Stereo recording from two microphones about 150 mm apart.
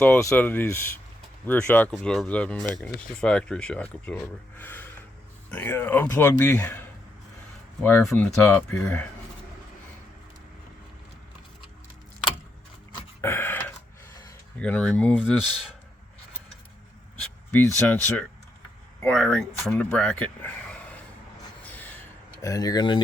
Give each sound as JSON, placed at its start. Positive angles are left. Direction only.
{"t": 0.0, "sound": "speech", "side_deg": 10}
{"t": 13.2, "sound": "a sound", "side_deg": 15}
{"t": 14.6, "sound": "speech", "side_deg": 5}
{"t": 17.5, "sound": "speech", "side_deg": 10}
{"t": 21.7, "sound": "a sound", "side_deg": 10}
{"t": 22.4, "sound": "speech", "side_deg": 20}